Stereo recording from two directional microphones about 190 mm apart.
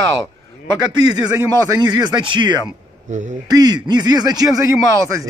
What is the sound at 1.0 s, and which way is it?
A man's voice, 20° right (ahead or behind).